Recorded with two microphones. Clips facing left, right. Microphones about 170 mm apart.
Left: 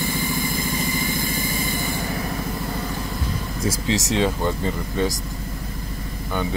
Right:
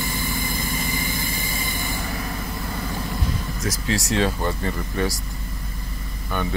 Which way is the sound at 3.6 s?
20° left (ahead or behind).